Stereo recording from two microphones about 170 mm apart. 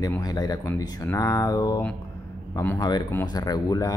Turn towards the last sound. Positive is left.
turn(degrees=20)  # may be behind; listen again after turning